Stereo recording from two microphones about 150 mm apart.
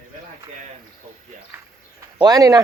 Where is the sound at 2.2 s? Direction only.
25° right (ahead or behind).